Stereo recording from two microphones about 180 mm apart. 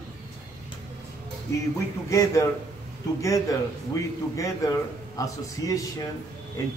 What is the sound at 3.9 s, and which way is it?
A man's voice, 20° left (ahead or behind).